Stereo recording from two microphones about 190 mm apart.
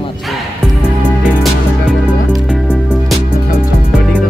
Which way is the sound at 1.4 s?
Centre (ahead or behind).